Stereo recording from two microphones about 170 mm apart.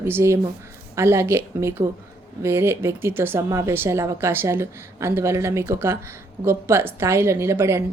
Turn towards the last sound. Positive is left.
turn(degrees=-15)  # may be behind; listen again after turning